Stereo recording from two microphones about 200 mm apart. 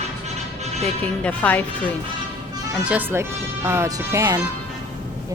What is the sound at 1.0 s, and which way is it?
Speech, 5° left (ahead or behind).